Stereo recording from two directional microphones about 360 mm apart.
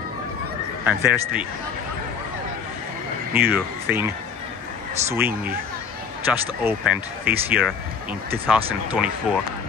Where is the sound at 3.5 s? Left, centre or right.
Centre.